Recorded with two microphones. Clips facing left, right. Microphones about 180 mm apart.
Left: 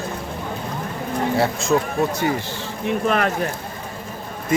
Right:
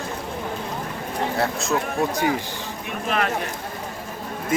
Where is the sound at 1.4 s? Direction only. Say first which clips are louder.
Left 3 dB; centre (ahead or behind).